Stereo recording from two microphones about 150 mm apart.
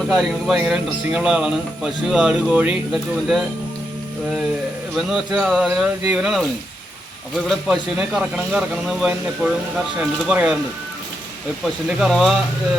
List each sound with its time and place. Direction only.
0.1 s speech: 5° right (ahead or behind)
4.9 s speech: centre (ahead or behind)
11.6 s speech: 5° right (ahead or behind)